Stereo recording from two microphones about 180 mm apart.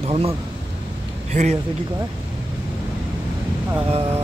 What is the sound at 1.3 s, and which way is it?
Speech, 40° right (ahead or behind).